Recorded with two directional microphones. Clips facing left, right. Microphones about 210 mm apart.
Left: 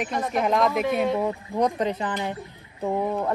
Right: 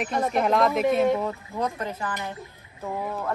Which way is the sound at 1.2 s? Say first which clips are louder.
Left 4 dB; 15° left (ahead or behind).